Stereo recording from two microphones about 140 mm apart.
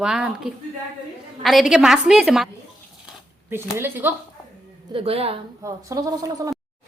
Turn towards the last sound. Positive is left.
turn(degrees=-25)  # may be behind; listen again after turning